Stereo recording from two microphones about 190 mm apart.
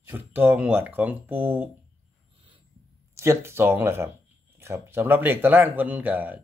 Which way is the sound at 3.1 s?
15° right (ahead or behind).